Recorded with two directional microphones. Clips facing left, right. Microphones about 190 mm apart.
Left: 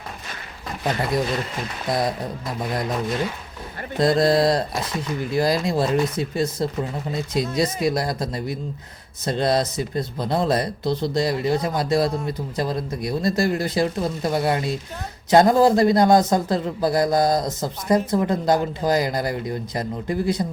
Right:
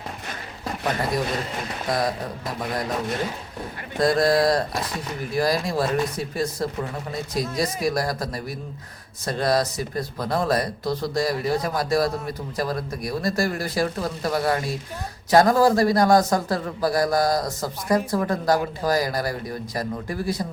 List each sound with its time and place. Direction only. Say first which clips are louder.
1.9 s speech: left 1 dB; 25° left (ahead or behind)
3.9 s speech: left 2 dB; 25° left (ahead or behind)